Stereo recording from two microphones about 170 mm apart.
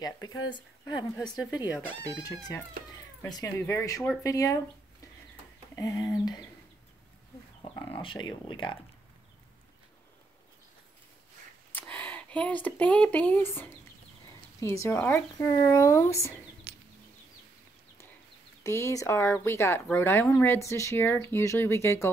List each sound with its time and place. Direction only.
0.0 s speech: 25° left (ahead or behind)
1.1 s a woman's voice: 5° left (ahead or behind)
3.2 s speech: 20° left (ahead or behind)
5.8 s speech: 20° left (ahead or behind)
7.9 s speech: 30° left (ahead or behind)
11.7 s speech: 10° left (ahead or behind)
16.7 s a sound: 70° right (ahead or behind)
18.6 s speech: 15° left (ahead or behind)